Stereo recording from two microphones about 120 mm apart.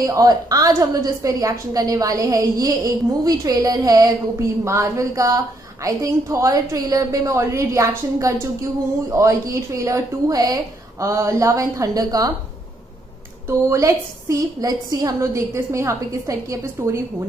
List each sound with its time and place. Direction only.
0.0 s a woman's voice: 30° right (ahead or behind)
13.5 s a woman's voice: 25° right (ahead or behind)